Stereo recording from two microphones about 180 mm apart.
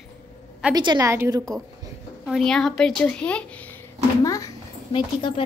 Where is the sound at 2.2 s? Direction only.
Centre (ahead or behind).